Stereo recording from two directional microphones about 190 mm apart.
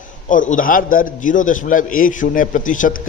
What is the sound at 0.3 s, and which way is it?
A man's voice, 45° left (ahead or behind).